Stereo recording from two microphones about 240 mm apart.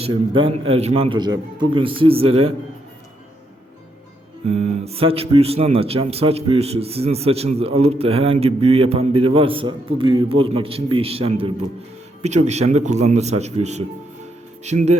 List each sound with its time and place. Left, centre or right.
0.0 s speech: right
4.4 s speech: right